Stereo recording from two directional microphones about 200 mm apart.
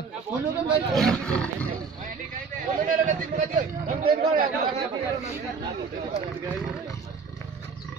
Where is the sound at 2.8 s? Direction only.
40° right (ahead or behind).